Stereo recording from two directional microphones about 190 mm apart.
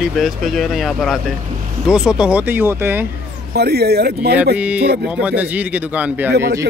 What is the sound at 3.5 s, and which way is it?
Speech, 60° right (ahead or behind).